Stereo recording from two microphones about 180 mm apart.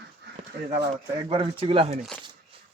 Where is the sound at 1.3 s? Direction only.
30° right (ahead or behind).